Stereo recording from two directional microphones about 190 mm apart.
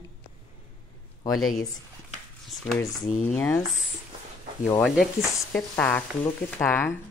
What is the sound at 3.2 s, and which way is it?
Speech, 10° left (ahead or behind).